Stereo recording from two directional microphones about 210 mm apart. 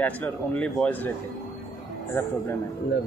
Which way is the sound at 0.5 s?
5° left (ahead or behind).